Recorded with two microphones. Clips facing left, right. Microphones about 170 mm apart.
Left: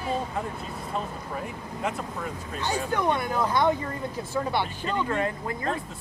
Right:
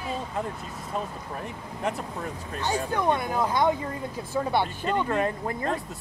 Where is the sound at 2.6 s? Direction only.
15° right (ahead or behind).